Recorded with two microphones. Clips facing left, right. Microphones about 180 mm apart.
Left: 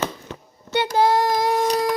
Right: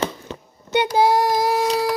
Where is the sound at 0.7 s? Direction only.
15° right (ahead or behind).